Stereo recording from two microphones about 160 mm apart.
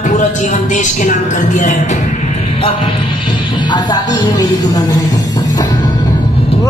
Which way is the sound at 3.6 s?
25° left (ahead or behind).